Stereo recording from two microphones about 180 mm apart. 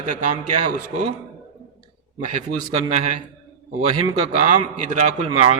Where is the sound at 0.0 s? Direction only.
45° right (ahead or behind).